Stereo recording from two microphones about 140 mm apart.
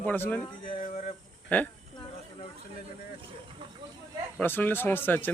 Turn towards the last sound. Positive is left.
turn(degrees=15)  # may be behind; listen again after turning